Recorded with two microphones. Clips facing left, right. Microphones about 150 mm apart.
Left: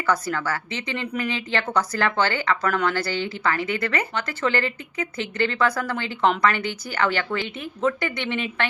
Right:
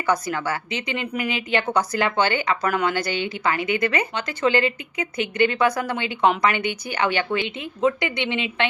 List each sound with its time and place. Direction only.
0.1 s a woman's voice: 15° right (ahead or behind)